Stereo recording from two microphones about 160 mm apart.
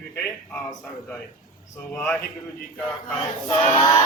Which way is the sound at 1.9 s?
10° left (ahead or behind).